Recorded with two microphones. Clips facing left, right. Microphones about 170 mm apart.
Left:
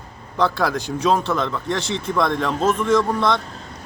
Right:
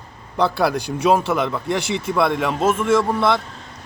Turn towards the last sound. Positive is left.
turn(degrees=-5)  # may be behind; listen again after turning